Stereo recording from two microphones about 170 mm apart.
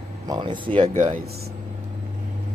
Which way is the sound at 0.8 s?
45° right (ahead or behind).